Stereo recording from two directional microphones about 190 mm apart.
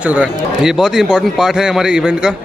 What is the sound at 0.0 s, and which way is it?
Speech, 5° right (ahead or behind).